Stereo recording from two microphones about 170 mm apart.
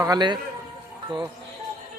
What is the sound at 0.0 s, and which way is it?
Speech, 25° right (ahead or behind).